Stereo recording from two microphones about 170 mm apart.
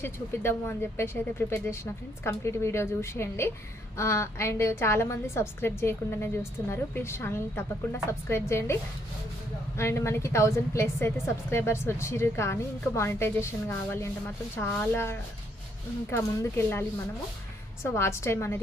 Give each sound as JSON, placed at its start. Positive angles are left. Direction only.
{"t": 0.0, "sound": "a woman's voice", "side_deg": 15}
{"t": 17.8, "sound": "a woman's voice", "side_deg": 15}